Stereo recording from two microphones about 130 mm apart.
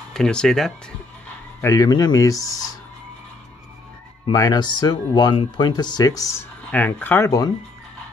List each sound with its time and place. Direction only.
0.1 s speech: 5° left (ahead or behind)
1.6 s speech: 25° left (ahead or behind)
4.3 s speech: 30° left (ahead or behind)